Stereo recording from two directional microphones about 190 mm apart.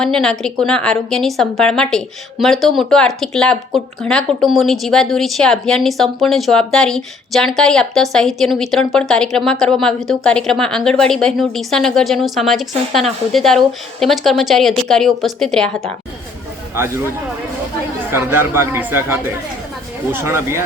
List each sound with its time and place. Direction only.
0.0 s a woman's voice: centre (ahead or behind)
18.1 s speech: 10° right (ahead or behind)